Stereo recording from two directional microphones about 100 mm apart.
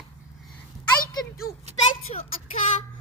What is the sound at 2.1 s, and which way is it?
Child singing, 90° left.